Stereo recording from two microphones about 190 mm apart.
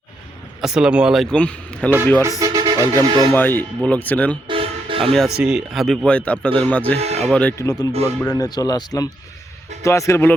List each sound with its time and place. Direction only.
0.6 s speech: 5° right (ahead or behind)
2.4 s music: 20° right (ahead or behind)
2.9 s speech: 20° right (ahead or behind)
3.3 s speech: 10° left (ahead or behind)
4.4 s toot: 30° right (ahead or behind)
5.4 s speech: 5° right (ahead or behind)
7.0 s speech: 35° right (ahead or behind)
7.3 s speech: 5° left (ahead or behind)